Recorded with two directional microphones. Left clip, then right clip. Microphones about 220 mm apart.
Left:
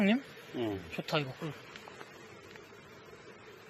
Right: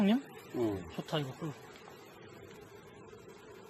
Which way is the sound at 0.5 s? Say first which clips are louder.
Right 2 dB; 25° right (ahead or behind).